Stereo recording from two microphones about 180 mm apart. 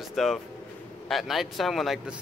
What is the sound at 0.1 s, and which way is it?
Speech, centre (ahead or behind).